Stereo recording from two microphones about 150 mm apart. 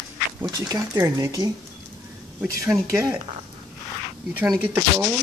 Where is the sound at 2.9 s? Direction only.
20° right (ahead or behind).